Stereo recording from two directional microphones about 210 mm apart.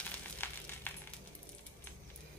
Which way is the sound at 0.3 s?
10° left (ahead or behind).